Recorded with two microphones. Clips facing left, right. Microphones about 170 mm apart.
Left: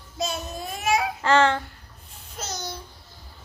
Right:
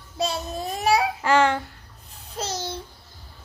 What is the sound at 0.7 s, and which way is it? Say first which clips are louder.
Speech: right 3 dB; 35° right (ahead or behind).